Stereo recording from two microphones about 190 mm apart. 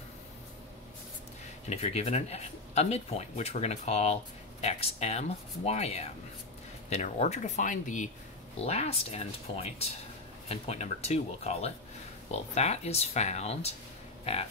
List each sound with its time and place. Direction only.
1.7 s speech: 35° left (ahead or behind)